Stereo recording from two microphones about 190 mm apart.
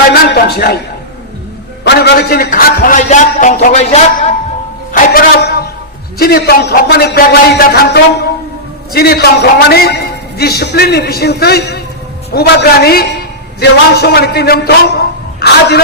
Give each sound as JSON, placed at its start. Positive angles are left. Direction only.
{"t": 0.1, "sound": "a sound", "side_deg": 60}
{"t": 1.8, "sound": "a man's voice", "side_deg": 60}
{"t": 4.9, "sound": "music", "side_deg": 55}
{"t": 6.1, "sound": "a man's voice", "side_deg": 55}